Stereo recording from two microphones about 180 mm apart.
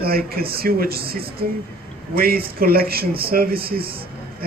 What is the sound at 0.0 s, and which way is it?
A woman's voice, 55° right (ahead or behind).